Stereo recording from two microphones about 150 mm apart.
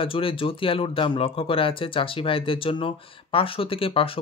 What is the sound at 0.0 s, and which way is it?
Speech, 35° left (ahead or behind).